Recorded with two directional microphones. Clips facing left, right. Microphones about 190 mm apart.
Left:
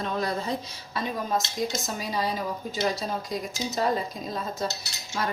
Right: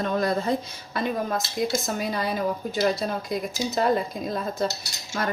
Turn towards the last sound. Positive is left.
turn(degrees=-55)  # may be behind; listen again after turning